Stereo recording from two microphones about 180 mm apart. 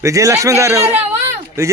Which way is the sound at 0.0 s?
15° right (ahead or behind).